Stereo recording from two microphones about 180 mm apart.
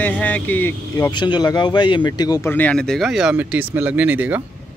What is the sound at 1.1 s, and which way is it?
Speech, 25° left (ahead or behind).